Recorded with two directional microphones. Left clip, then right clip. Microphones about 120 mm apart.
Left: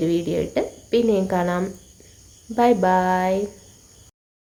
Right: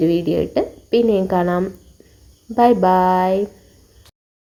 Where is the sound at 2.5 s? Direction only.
25° right (ahead or behind).